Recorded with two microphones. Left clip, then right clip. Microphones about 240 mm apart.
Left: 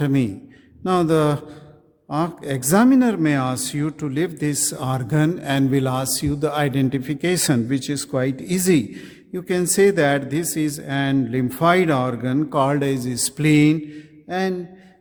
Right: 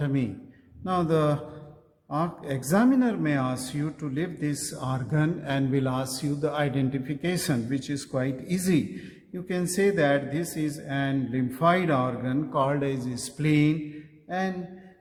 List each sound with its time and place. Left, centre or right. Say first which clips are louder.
0.0 s speech: left 8 dB; left
14.3 s mantra: left 6 dB; left